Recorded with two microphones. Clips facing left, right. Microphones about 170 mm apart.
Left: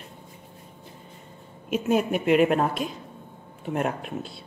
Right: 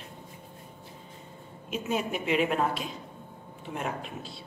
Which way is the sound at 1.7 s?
55° left (ahead or behind).